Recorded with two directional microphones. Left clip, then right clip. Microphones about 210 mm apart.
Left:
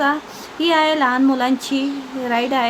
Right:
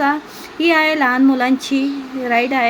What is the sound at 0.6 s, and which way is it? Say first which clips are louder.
A woman's voice: right 2 dB; 5° right (ahead or behind).